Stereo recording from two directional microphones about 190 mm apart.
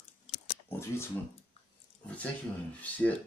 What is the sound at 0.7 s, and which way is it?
Speech, 15° left (ahead or behind).